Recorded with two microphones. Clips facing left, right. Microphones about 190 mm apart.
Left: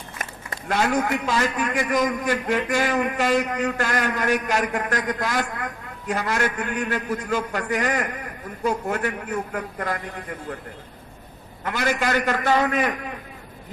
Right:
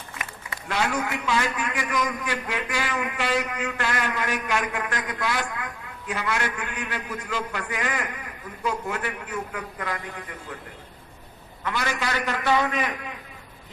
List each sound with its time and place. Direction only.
0.2 s a man's voice: 45° left (ahead or behind)
11.6 s a man's voice: 45° left (ahead or behind)